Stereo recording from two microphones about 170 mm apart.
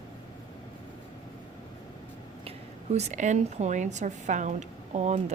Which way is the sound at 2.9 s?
45° right (ahead or behind).